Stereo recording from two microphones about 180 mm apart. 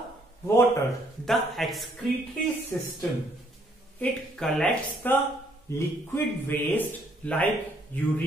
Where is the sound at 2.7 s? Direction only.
15° left (ahead or behind).